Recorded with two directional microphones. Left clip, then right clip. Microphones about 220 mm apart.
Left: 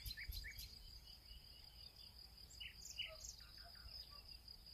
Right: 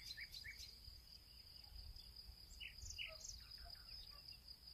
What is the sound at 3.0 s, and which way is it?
Bird, 50° left (ahead or behind).